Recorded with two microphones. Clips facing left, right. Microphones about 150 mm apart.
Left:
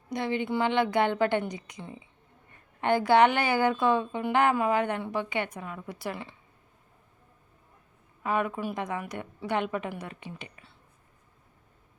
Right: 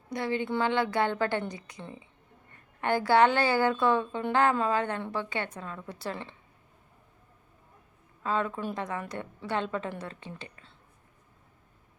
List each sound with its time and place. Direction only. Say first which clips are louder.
0.1 s a woman's voice: left 1 dB; 20° left (ahead or behind)
8.2 s a woman's voice: left 1 dB; 15° left (ahead or behind)